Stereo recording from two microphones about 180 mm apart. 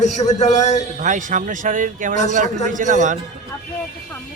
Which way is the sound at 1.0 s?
45° right (ahead or behind).